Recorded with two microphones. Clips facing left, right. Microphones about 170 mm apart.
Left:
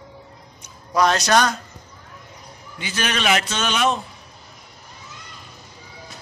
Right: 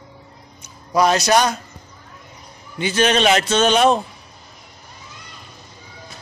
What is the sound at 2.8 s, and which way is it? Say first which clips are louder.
A man's voice: right 8 dB; 25° right (ahead or behind).